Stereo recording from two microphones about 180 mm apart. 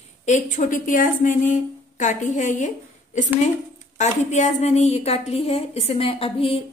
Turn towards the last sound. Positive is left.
turn(degrees=30)  # may be behind; listen again after turning